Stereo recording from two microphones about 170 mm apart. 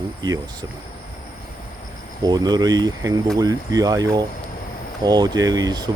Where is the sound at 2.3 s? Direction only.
25° right (ahead or behind).